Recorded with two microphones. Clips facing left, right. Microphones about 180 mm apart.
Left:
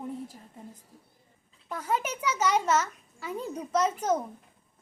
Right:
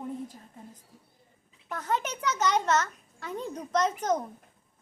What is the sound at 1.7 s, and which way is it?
A child's voice, 10° left (ahead or behind).